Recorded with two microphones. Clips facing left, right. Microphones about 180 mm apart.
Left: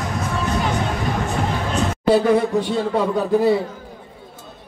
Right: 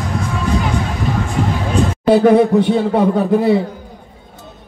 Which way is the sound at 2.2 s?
65° right (ahead or behind).